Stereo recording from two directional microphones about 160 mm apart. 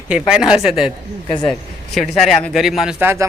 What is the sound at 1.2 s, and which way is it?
Speech, 30° left (ahead or behind).